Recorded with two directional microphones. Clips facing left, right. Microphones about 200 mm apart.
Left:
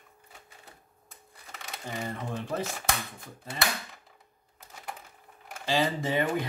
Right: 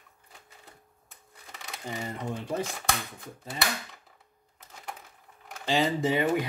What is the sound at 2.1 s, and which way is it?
Speech, 15° right (ahead or behind).